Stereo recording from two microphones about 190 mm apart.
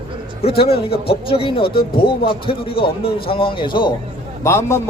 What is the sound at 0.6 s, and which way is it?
A man's voice, 30° left (ahead or behind).